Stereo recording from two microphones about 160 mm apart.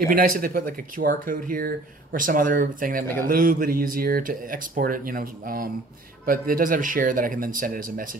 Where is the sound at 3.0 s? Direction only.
15° left (ahead or behind).